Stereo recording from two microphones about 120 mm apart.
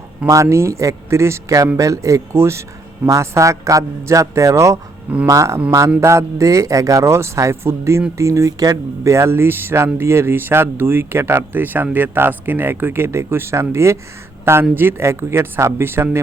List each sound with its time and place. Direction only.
0.2 s speech: 10° right (ahead or behind)
0.5 s speech: 25° right (ahead or behind)